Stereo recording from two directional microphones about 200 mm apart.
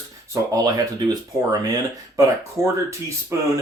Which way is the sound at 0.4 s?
15° right (ahead or behind).